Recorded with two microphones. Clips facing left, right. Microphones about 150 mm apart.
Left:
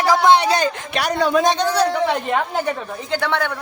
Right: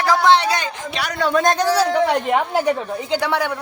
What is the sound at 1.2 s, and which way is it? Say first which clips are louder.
Speech: left 1 dB; 15° left (ahead or behind).